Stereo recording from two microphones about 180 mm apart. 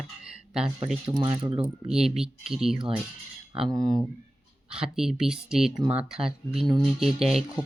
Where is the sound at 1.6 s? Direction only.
5° right (ahead or behind).